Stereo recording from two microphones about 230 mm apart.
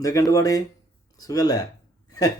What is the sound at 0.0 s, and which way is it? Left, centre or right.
Speech, centre.